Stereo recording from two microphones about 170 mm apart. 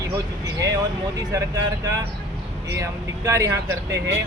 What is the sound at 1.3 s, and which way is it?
Speech, 20° right (ahead or behind).